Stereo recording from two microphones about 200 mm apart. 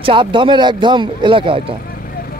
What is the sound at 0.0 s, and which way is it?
Speech, 25° right (ahead or behind).